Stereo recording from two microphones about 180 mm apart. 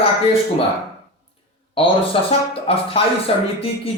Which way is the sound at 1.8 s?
30° left (ahead or behind).